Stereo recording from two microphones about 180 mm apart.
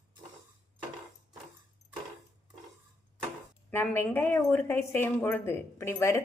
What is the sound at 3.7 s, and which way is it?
A woman's voice, 10° left (ahead or behind).